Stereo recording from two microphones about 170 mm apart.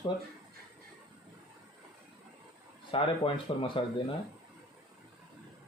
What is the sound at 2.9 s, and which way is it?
Speech, 30° left (ahead or behind).